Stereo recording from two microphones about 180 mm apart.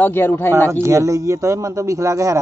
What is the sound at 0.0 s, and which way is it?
Speech, 10° left (ahead or behind).